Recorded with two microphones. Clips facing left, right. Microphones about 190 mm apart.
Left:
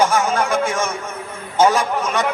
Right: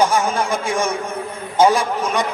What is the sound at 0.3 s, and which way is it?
A man's voice, 10° right (ahead or behind).